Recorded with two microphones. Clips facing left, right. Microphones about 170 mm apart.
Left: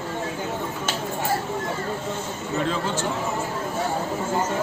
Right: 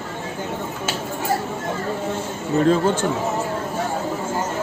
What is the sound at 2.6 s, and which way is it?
Speech, 45° right (ahead or behind).